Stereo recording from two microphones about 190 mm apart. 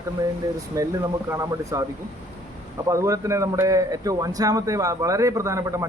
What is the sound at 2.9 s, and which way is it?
Speech, 15° right (ahead or behind).